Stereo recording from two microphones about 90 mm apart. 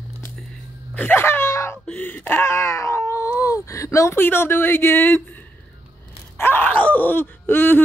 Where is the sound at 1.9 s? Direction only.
20° left (ahead or behind).